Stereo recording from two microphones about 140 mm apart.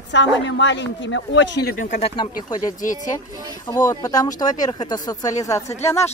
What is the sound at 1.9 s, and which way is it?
Speech, 50° left (ahead or behind).